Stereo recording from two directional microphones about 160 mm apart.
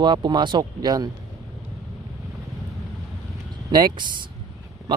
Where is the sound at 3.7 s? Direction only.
30° right (ahead or behind).